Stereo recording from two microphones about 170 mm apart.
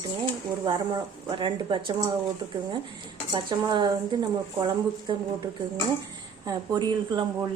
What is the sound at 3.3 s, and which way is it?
A woman's voice, 30° right (ahead or behind).